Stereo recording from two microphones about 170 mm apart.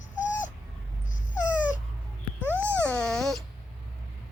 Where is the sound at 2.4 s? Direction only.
15° right (ahead or behind).